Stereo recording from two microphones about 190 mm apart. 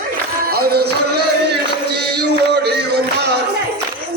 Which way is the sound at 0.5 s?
55° right (ahead or behind).